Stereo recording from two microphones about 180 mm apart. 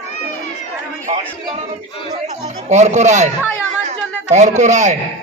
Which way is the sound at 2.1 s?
40° right (ahead or behind).